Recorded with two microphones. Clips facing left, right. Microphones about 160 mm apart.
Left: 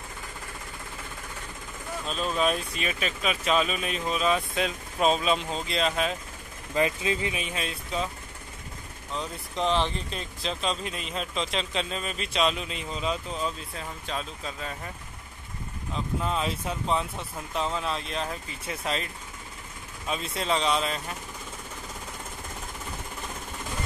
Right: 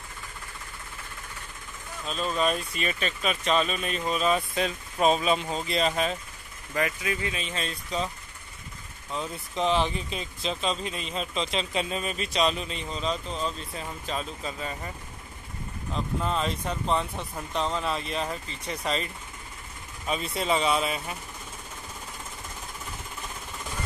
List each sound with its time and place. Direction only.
2.0 s speech: centre (ahead or behind)
6.7 s speech: 20° left (ahead or behind); by 8.1 s 5° left (ahead or behind)
9.1 s speech: 5° right (ahead or behind)